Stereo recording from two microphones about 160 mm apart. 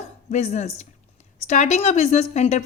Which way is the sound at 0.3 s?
45° left (ahead or behind).